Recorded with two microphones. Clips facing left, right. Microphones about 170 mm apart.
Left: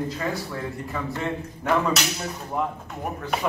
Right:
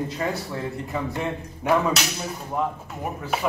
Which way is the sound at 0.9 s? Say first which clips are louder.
Right 1 dB; 15° right (ahead or behind).